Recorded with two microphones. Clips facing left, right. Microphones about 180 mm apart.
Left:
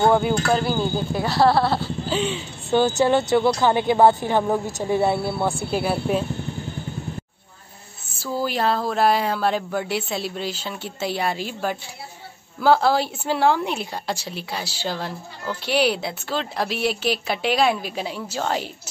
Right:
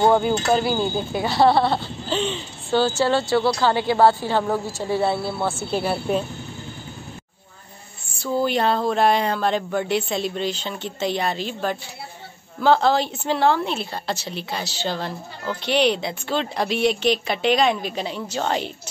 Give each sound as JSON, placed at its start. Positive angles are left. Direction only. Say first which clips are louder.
{"t": 0.5, "sound": "speech", "louder": "right 1 dB", "side_deg": -5}
{"t": 8.2, "sound": "speech", "louder": "right 3 dB", "side_deg": 5}